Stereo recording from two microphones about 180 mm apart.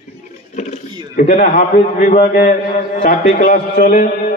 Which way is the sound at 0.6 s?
40° left (ahead or behind).